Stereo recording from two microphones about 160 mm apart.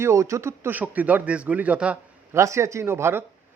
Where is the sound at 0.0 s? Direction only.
15° right (ahead or behind).